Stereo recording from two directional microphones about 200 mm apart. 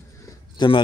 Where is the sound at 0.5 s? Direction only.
20° left (ahead or behind).